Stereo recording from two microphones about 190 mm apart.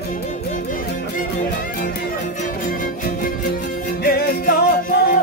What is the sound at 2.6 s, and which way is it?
Music, 50° left (ahead or behind).